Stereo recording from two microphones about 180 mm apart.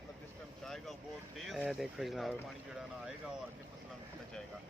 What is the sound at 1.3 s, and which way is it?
Speech, centre (ahead or behind).